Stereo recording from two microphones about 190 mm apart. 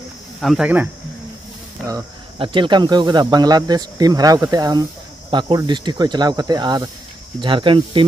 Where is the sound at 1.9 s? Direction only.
25° right (ahead or behind).